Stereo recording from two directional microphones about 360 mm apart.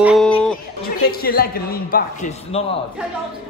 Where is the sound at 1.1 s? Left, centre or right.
Left.